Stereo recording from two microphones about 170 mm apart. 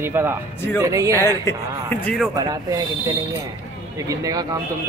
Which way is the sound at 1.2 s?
15° left (ahead or behind).